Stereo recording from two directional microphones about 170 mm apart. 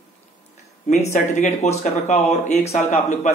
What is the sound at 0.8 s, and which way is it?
Speech, 45° left (ahead or behind).